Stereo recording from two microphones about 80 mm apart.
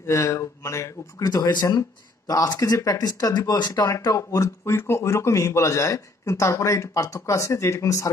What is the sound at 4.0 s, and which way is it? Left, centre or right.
A man's voice, left.